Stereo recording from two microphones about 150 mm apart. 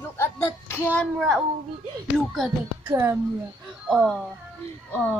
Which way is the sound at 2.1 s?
Centre (ahead or behind).